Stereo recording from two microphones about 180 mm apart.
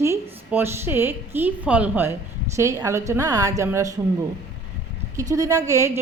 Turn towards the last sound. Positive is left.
turn(degrees=-15)  # may be behind; listen again after turning